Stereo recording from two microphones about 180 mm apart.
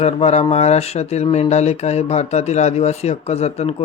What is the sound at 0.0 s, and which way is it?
Speech, 35° left (ahead or behind).